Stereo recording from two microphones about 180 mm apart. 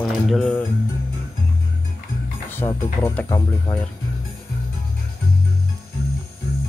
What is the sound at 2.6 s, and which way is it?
Speech, 20° left (ahead or behind).